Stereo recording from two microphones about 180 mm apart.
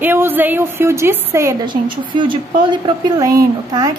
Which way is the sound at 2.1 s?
25° right (ahead or behind).